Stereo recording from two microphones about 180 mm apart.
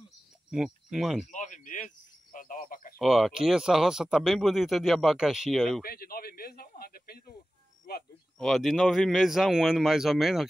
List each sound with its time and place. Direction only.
0.5 s speech: 5° right (ahead or behind)
1.3 s a sound: 45° left (ahead or behind)
2.3 s speech: 50° left (ahead or behind)
3.0 s speech: centre (ahead or behind)
5.9 s a man's voice: 55° left (ahead or behind)
8.4 s speech: centre (ahead or behind)